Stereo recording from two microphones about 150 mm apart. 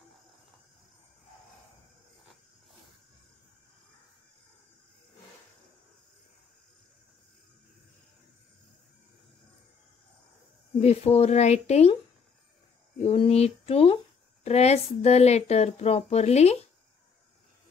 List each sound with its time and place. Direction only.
10.8 s speech: 45° left (ahead or behind)
13.0 s speech: 40° left (ahead or behind)